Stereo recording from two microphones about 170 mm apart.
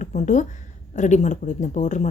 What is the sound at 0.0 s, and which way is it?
A woman's voice, 45° left (ahead or behind).